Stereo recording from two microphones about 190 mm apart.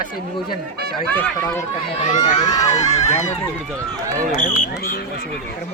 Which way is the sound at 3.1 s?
35° left (ahead or behind).